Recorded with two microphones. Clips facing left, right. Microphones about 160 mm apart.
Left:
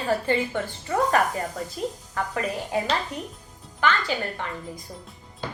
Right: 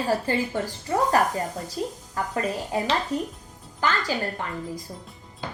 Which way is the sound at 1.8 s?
25° right (ahead or behind).